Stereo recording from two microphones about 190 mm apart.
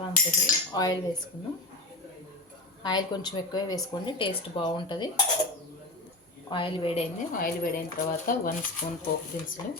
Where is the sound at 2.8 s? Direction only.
20° left (ahead or behind).